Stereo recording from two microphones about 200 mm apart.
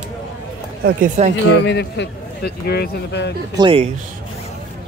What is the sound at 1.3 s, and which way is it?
A man's voice, 60° left (ahead or behind).